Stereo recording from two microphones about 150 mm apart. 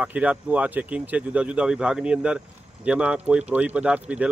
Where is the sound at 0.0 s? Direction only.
10° right (ahead or behind).